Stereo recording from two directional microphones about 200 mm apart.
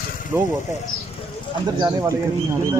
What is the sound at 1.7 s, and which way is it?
Speech, 20° right (ahead or behind).